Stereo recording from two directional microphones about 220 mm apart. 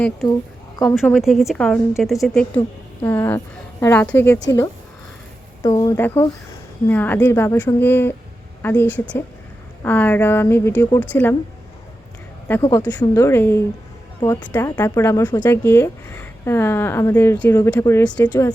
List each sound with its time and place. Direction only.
0.8 s a woman's voice: centre (ahead or behind)
5.6 s speech: 20° left (ahead or behind)
6.0 s speech: 10° left (ahead or behind)
12.5 s speech: 10° left (ahead or behind)